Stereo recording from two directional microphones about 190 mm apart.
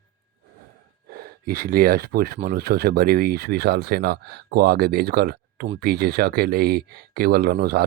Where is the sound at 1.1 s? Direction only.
50° right (ahead or behind).